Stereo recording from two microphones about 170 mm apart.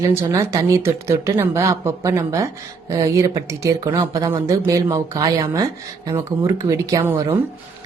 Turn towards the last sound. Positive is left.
turn(degrees=-15)  # may be behind; listen again after turning